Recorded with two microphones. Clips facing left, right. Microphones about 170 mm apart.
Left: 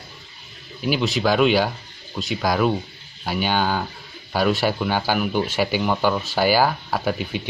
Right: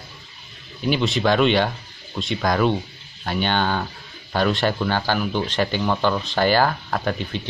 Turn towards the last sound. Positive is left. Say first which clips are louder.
# left 1 dB
turn(degrees=5)  # may be behind; listen again after turning